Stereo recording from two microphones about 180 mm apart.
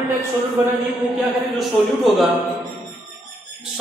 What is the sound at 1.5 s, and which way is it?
Speech, centre (ahead or behind).